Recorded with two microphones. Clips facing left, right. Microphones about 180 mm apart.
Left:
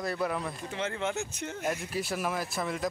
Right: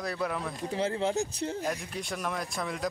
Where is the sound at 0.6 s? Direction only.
35° right (ahead or behind).